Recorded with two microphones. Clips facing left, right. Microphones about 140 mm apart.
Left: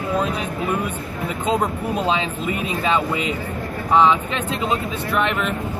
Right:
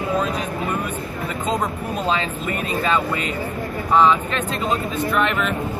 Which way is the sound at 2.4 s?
10° left (ahead or behind).